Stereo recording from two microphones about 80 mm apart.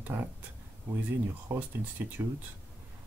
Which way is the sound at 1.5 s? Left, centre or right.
Right.